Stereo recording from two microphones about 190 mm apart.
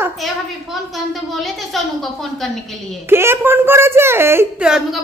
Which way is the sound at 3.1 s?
10° right (ahead or behind).